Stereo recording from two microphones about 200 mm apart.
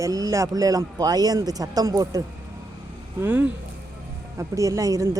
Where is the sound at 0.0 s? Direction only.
15° right (ahead or behind).